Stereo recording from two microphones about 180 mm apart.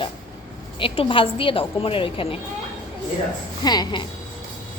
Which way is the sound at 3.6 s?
20° left (ahead or behind).